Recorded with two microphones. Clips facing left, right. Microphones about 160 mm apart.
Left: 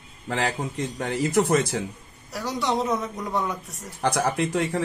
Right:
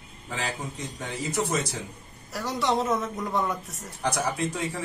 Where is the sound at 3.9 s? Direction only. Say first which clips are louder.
Left 4 dB; 55° left (ahead or behind).